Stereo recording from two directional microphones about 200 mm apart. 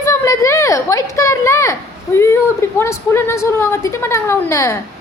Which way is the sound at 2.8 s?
15° left (ahead or behind).